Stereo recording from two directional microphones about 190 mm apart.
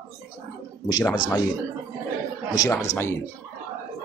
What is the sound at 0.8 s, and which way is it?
Speech, 20° left (ahead or behind).